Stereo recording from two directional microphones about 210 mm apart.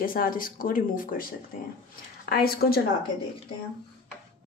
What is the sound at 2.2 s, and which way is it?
Speech, 45° left (ahead or behind).